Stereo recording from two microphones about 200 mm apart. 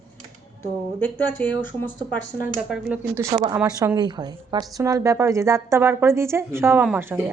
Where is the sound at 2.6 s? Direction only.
5° right (ahead or behind).